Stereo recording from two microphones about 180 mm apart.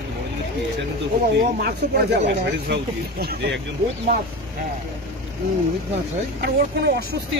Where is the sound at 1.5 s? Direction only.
60° right (ahead or behind).